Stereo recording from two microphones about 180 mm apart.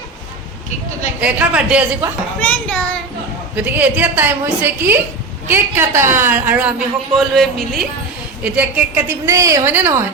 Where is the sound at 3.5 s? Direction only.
10° right (ahead or behind).